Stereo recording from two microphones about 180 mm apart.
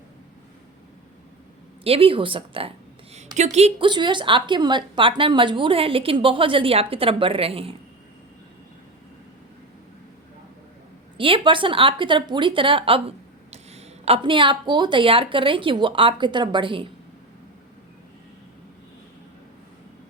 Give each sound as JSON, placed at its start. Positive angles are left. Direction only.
{"t": 1.8, "sound": "a woman's voice", "side_deg": -30}
{"t": 11.2, "sound": "a woman's voice", "side_deg": -30}